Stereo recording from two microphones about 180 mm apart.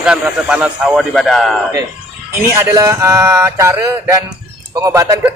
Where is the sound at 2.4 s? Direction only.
15° right (ahead or behind).